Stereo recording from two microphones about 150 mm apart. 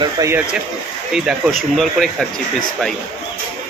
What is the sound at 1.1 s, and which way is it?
Speech, 5° right (ahead or behind).